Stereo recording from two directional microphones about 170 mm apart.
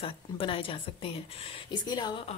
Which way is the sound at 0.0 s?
30° left (ahead or behind).